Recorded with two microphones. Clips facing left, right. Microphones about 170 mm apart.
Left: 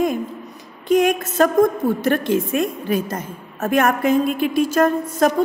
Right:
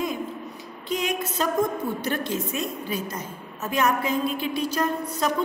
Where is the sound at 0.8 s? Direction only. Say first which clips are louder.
Left 11 dB; 50° left (ahead or behind).